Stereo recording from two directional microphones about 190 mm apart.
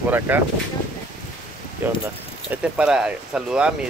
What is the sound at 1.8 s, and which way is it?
Speech, 10° right (ahead or behind).